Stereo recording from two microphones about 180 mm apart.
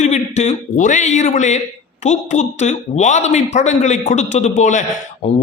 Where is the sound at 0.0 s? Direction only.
40° left (ahead or behind).